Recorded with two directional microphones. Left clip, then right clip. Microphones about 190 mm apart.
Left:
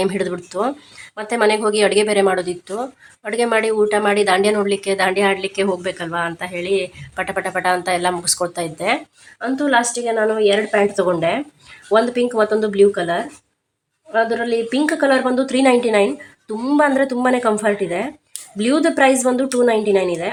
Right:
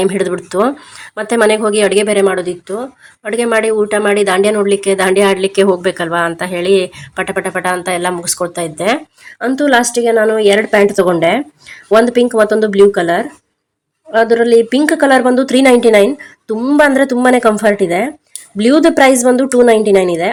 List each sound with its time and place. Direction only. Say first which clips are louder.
0.0 s a woman's voice: right 6 dB; 20° right (ahead or behind)
9.4 s a woman's voice: right 6 dB; 35° right (ahead or behind)